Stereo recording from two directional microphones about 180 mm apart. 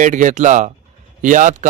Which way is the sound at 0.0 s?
45° right (ahead or behind).